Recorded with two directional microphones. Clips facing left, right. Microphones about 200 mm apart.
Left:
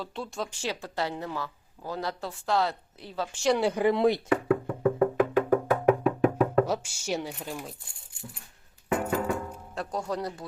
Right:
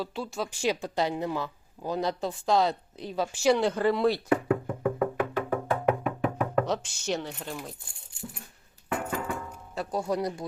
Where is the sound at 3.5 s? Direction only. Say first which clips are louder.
Left 1 dB; 10° left (ahead or behind).